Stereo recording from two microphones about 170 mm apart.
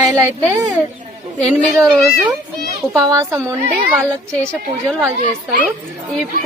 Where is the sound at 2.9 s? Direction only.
15° right (ahead or behind).